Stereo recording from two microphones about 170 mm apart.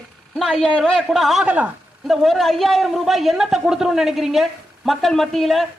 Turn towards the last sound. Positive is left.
turn(degrees=0)  # may be behind; listen again after turning